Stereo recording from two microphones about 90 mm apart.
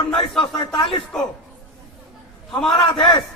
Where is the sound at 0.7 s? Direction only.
70° left (ahead or behind).